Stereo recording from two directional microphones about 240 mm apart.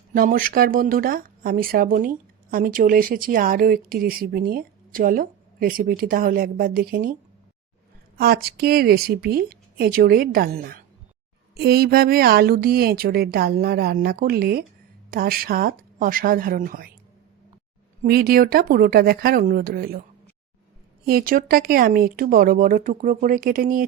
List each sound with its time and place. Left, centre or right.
0.1 s speech: right
8.2 s speech: right
18.0 s speech: right
21.0 s speech: right